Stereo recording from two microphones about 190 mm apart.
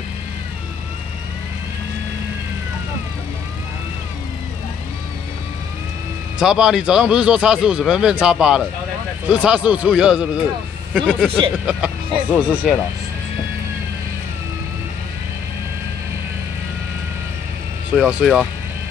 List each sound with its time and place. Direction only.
6.4 s speech: 5° right (ahead or behind)
11.6 s speech: 5° right (ahead or behind)
17.9 s speech: centre (ahead or behind)